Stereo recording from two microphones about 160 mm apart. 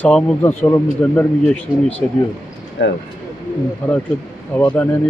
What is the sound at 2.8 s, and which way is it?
Speech, 90° left.